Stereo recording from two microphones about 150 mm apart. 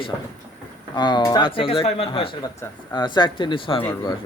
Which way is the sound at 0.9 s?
30° left (ahead or behind).